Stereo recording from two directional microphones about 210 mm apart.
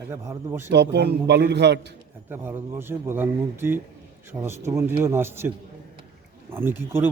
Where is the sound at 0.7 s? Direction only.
55° right (ahead or behind).